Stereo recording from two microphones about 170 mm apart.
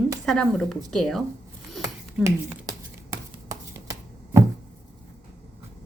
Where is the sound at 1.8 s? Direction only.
20° right (ahead or behind).